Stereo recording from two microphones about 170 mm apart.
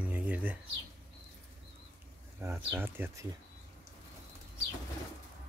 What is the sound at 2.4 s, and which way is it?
Speech, 15° right (ahead or behind).